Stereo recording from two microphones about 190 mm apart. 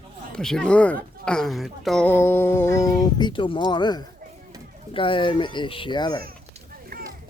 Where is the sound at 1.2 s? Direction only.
5° left (ahead or behind); by 4.0 s 25° left (ahead or behind).